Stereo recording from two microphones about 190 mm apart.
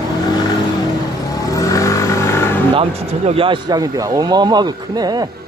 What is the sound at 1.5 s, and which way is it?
Vehicle, 15° left (ahead or behind).